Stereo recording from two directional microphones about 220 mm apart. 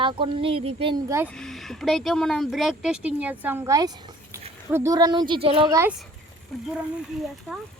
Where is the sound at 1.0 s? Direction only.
10° right (ahead or behind).